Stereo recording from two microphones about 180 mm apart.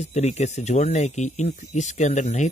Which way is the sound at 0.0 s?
40° left (ahead or behind).